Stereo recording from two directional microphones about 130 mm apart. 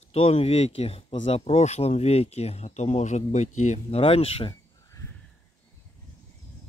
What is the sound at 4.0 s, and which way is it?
Speech, 45° left (ahead or behind).